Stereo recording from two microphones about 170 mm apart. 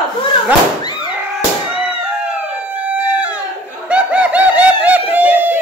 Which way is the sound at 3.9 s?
10° right (ahead or behind).